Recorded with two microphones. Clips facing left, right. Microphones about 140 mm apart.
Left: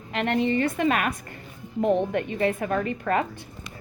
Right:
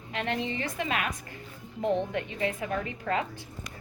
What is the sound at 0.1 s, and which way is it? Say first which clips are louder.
Speech: left 8 dB; 60° left (ahead or behind).